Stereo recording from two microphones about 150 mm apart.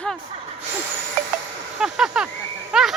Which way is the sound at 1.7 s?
5° right (ahead or behind).